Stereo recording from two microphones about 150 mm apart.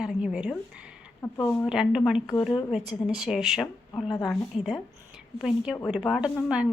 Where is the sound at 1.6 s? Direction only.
5° right (ahead or behind).